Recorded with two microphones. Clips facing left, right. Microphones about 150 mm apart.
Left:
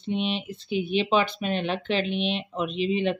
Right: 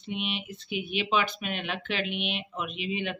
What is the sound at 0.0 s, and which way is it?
Speech, 30° left (ahead or behind).